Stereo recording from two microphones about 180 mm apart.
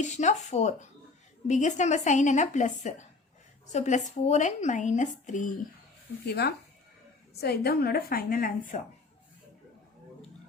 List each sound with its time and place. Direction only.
0.0 s speech: 40° left (ahead or behind)
6.2 s a woman's voice: 65° left (ahead or behind)